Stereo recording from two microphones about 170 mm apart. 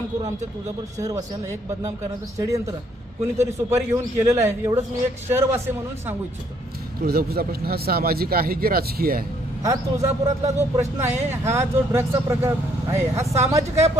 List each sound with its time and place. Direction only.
0.9 s speech: 20° right (ahead or behind)
7.0 s a man's voice: 60° right (ahead or behind)
9.6 s speech: 20° right (ahead or behind)